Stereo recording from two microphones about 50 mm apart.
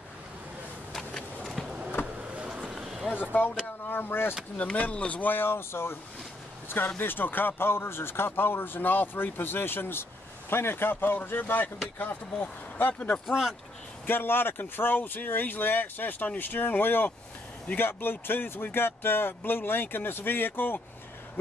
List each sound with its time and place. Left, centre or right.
2.2 s vehicle: right
3.4 s speech: left
4.6 s speech: left
5.2 s speech: left
7.0 s speech: left
13.3 s speech: centre
14.0 s speech: left